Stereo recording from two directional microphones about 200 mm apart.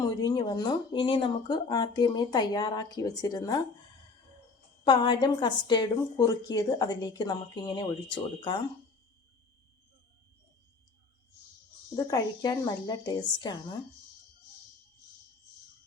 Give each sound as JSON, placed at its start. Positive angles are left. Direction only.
{"t": 0.0, "sound": "a woman's voice", "side_deg": 20}
{"t": 4.8, "sound": "a woman's voice", "side_deg": 25}
{"t": 11.9, "sound": "a woman's voice", "side_deg": 20}